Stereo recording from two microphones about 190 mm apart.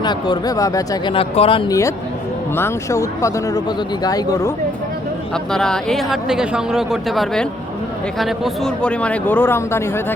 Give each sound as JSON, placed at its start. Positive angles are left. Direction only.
{"t": 0.0, "sound": "a man's voice", "side_deg": 25}
{"t": 5.3, "sound": "a man's voice", "side_deg": 5}